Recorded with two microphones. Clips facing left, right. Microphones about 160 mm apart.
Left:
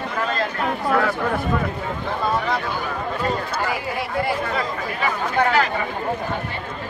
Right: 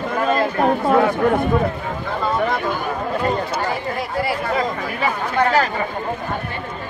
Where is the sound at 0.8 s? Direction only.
25° right (ahead or behind).